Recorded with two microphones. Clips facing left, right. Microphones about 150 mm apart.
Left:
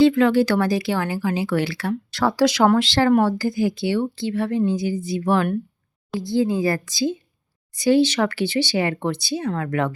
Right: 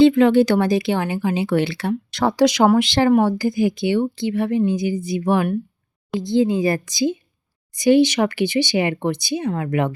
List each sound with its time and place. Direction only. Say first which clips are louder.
0.0 s speech: right 3 dB; 20° right (ahead or behind)